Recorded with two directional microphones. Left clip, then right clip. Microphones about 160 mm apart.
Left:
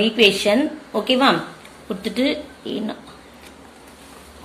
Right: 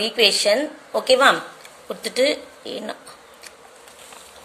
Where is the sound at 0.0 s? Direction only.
40° right (ahead or behind).